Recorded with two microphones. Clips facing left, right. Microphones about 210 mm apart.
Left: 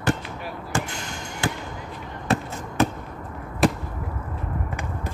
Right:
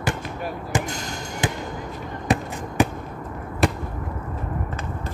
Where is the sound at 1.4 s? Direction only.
20° right (ahead or behind).